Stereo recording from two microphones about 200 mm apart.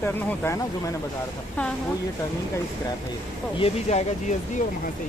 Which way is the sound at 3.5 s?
30° left (ahead or behind).